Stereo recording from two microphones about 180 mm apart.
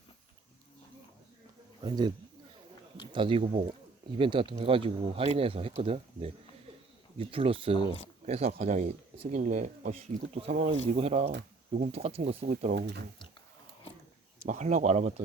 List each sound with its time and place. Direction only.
1.8 s speech: 25° right (ahead or behind)
7.8 s speech: 30° left (ahead or behind)
8.3 s speech: 35° right (ahead or behind)
12.7 s speech: 70° right (ahead or behind)
14.4 s speech: 45° right (ahead or behind)